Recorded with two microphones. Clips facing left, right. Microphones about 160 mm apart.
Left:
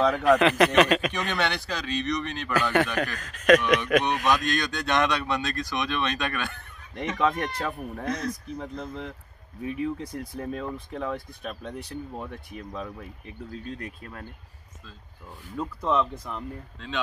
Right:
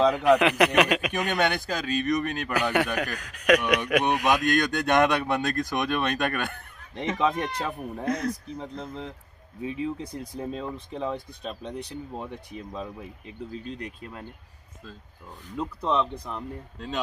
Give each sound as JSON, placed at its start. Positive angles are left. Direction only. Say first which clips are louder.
{"t": 0.0, "sound": "a man's voice", "louder": "right 1 dB", "side_deg": -15}
{"t": 1.4, "sound": "speech", "louder": "right 3 dB", "side_deg": -50}
{"t": 2.5, "sound": "a man's voice", "louder": "left 2 dB", "side_deg": -15}
{"t": 4.5, "sound": "speech", "louder": "right 4 dB", "side_deg": -55}
{"t": 7.0, "sound": "a man's voice", "louder": "even", "side_deg": -25}
{"t": 15.6, "sound": "speech", "louder": "even", "side_deg": 5}